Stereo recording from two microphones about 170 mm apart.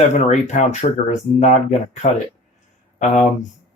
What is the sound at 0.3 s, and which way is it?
Speech, 45° left (ahead or behind).